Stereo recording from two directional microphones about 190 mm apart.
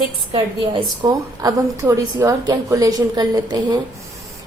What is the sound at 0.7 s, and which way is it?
A woman's voice, 20° right (ahead or behind).